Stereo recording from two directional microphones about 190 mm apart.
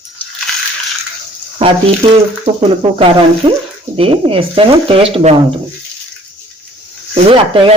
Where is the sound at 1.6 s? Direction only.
30° right (ahead or behind).